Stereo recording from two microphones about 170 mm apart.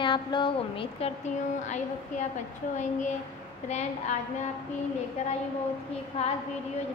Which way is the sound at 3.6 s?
45° left (ahead or behind).